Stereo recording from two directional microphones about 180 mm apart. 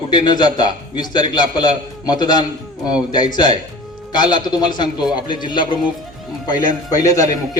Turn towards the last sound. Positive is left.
turn(degrees=20)  # may be behind; listen again after turning